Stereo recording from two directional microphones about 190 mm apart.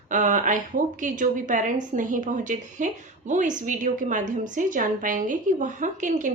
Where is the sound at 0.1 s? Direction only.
40° right (ahead or behind).